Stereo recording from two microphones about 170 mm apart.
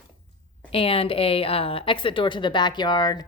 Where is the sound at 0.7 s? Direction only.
35° left (ahead or behind).